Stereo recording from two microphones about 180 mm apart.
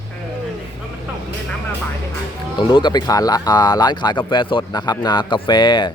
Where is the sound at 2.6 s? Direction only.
25° left (ahead or behind).